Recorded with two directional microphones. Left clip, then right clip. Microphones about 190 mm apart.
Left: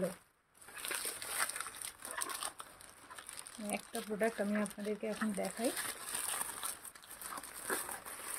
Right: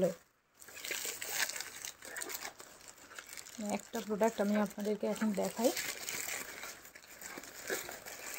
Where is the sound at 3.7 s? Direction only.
35° right (ahead or behind).